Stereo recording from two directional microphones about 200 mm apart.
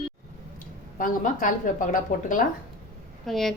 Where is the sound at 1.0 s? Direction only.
40° left (ahead or behind).